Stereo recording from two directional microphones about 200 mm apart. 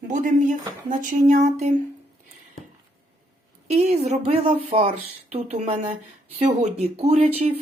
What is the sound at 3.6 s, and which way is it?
A woman's voice, 30° right (ahead or behind).